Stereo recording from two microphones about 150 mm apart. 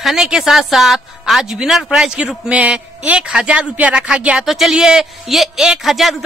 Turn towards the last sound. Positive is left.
turn(degrees=0)  # may be behind; listen again after turning